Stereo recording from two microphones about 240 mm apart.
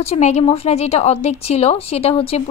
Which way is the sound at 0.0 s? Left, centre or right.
Left.